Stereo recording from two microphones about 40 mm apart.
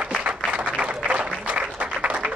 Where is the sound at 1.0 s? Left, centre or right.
Right.